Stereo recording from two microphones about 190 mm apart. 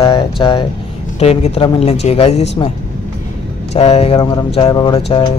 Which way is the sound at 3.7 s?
30° left (ahead or behind).